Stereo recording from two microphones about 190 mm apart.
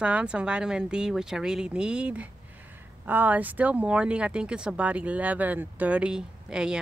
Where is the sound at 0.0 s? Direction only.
5° right (ahead or behind).